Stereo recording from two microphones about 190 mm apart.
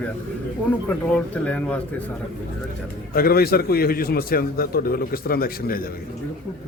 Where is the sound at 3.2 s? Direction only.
55° left (ahead or behind).